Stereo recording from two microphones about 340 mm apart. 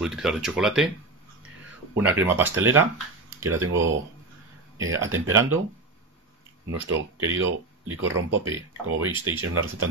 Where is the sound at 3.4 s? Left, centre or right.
Right.